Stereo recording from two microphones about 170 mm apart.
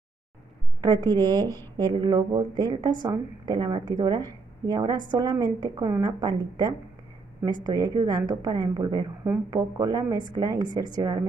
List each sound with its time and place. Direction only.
0.7 s speech: 25° right (ahead or behind)